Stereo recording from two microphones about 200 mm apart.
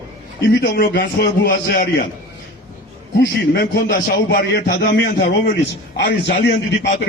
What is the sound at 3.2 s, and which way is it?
A man's voice, 55° left (ahead or behind).